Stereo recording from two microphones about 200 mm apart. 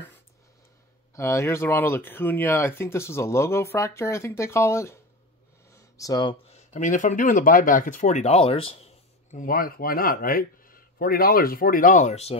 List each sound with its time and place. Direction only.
1.1 s speech: 15° left (ahead or behind); by 12.4 s 35° left (ahead or behind)